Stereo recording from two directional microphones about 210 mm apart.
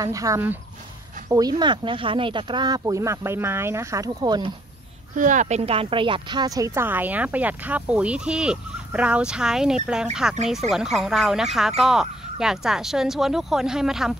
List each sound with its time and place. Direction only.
0.0 s speech: 15° right (ahead or behind)
5.1 s speech: 40° right (ahead or behind); by 14.1 s centre (ahead or behind)